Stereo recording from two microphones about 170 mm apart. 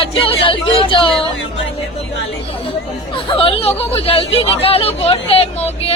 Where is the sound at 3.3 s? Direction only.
30° left (ahead or behind).